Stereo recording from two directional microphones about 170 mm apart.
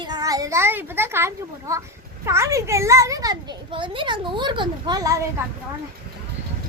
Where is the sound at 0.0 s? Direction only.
25° right (ahead or behind).